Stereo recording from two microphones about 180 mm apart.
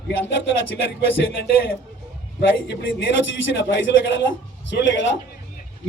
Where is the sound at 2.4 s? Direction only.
75° left (ahead or behind); by 5.2 s 90° left.